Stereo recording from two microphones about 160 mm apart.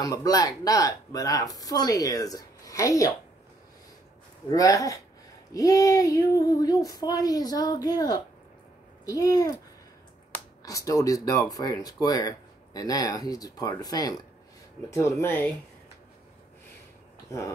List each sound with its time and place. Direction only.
0.0 s speech: 25° left (ahead or behind)
4.5 s speech: 20° left (ahead or behind)